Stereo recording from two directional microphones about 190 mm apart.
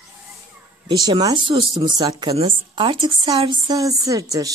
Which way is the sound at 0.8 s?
20° right (ahead or behind).